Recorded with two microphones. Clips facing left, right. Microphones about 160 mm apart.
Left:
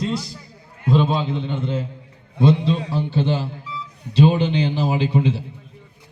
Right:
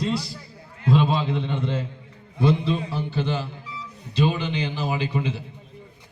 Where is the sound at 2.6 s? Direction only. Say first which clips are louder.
Left 3 dB; 85° left.